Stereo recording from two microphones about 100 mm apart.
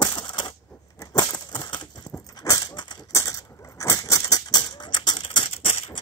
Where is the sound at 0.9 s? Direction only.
35° left (ahead or behind).